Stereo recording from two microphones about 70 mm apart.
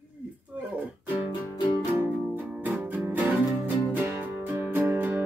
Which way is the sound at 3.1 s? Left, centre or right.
Right.